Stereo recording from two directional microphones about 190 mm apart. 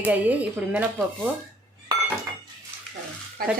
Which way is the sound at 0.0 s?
10° right (ahead or behind).